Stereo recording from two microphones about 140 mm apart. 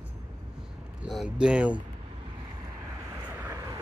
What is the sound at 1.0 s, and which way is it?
Speech, 5° right (ahead or behind).